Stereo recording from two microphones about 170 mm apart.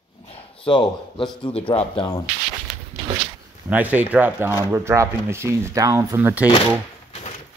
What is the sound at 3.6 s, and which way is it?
Speech, 10° right (ahead or behind).